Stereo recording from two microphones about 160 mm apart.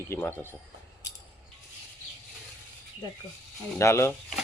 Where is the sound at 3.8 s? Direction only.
15° left (ahead or behind).